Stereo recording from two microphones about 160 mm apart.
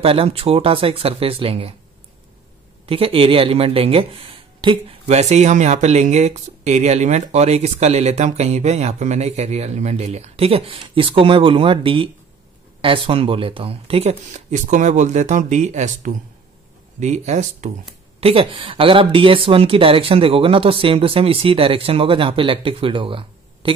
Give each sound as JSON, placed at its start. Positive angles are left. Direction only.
{"t": 0.0, "sound": "speech", "side_deg": -35}
{"t": 2.9, "sound": "speech", "side_deg": -35}